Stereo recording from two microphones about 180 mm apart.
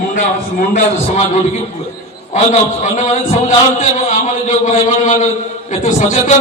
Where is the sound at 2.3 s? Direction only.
40° left (ahead or behind).